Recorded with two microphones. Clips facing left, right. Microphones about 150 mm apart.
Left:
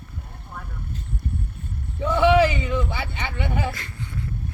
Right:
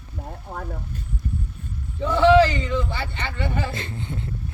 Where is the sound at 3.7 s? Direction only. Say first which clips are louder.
Right 4 dB; 25° right (ahead or behind).